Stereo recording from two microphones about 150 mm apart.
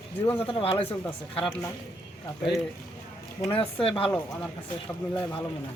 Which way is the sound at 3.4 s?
35° left (ahead or behind).